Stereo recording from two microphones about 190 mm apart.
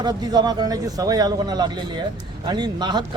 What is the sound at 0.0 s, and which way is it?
Speech, 20° right (ahead or behind).